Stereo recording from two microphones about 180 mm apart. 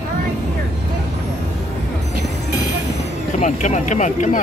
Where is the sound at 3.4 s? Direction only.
40° left (ahead or behind).